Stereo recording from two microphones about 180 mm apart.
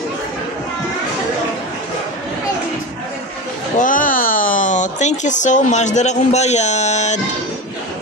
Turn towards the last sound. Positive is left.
turn(degrees=40)  # may be behind; listen again after turning